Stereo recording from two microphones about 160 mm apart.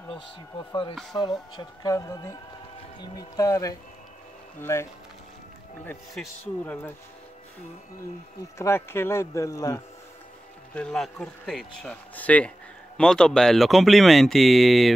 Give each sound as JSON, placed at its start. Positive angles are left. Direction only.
{"t": 1.1, "sound": "speech", "side_deg": 25}
{"t": 6.4, "sound": "speech", "side_deg": 10}
{"t": 8.5, "sound": "speech", "side_deg": 15}
{"t": 10.7, "sound": "speech", "side_deg": 5}